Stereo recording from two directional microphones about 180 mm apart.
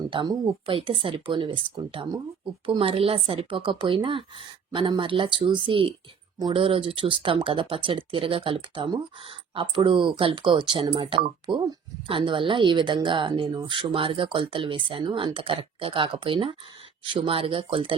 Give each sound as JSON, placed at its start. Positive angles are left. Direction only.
{"t": 0.1, "sound": "speech", "side_deg": -30}